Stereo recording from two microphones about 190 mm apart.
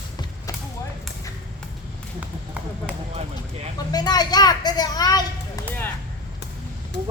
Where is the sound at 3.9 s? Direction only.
20° left (ahead or behind).